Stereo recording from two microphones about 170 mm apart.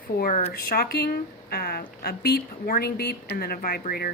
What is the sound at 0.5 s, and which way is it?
Speech, 65° left (ahead or behind).